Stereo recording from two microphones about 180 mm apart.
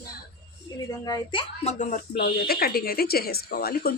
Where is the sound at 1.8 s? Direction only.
45° left (ahead or behind).